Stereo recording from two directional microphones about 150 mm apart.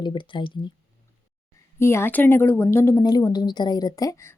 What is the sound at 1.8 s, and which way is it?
Speech, 15° left (ahead or behind).